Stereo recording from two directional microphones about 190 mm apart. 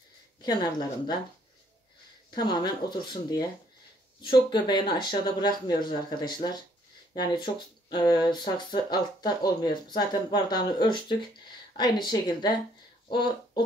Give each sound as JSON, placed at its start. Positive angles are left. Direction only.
{"t": 0.4, "sound": "speech", "side_deg": 20}
{"t": 2.3, "sound": "speech", "side_deg": 20}
{"t": 7.3, "sound": "speech", "side_deg": 25}